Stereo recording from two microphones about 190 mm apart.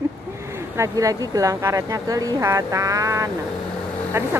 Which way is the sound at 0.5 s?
15° right (ahead or behind).